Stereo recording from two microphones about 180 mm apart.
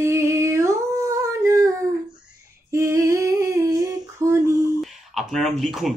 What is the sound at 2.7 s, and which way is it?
Humming, 15° right (ahead or behind).